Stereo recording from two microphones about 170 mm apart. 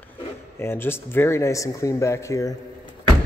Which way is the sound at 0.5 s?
15° left (ahead or behind).